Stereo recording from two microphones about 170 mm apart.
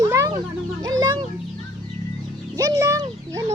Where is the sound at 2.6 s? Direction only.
20° right (ahead or behind).